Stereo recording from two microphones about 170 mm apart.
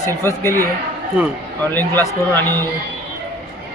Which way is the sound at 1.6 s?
10° left (ahead or behind).